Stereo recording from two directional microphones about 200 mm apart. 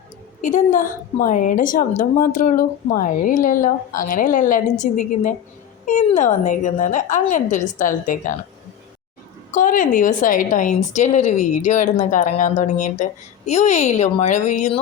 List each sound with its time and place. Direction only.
0.4 s a woman's voice: 40° left (ahead or behind)
9.5 s a woman's voice: 40° left (ahead or behind)